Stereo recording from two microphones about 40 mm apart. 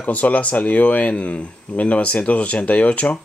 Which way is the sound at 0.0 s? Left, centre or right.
Left.